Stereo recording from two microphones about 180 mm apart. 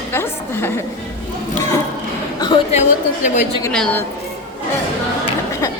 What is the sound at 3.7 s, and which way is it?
Speech, 5° left (ahead or behind).